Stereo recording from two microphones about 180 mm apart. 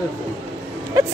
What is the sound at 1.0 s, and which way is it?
Speech, 20° right (ahead or behind).